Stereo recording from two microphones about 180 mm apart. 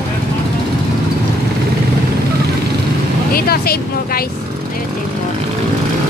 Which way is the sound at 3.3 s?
60° left (ahead or behind).